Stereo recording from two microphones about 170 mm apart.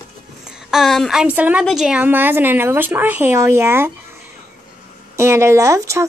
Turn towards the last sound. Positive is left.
turn(degrees=-20)  # may be behind; listen again after turning